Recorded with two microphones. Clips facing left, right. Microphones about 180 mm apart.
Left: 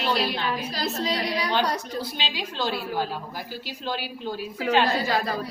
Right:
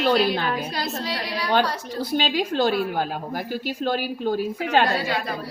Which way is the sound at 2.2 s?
50° right (ahead or behind).